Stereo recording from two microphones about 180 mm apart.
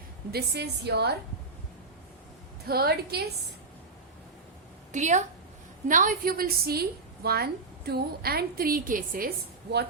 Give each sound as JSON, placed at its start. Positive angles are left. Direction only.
{"t": 0.3, "sound": "a woman's voice", "side_deg": -65}
{"t": 2.6, "sound": "a woman's voice", "side_deg": -60}
{"t": 4.9, "sound": "a woman's voice", "side_deg": -40}